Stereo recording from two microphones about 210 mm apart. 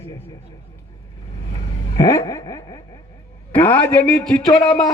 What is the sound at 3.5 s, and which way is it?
A man's voice, 5° left (ahead or behind).